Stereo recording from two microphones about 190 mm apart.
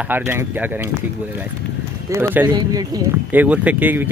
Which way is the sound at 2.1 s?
10° right (ahead or behind).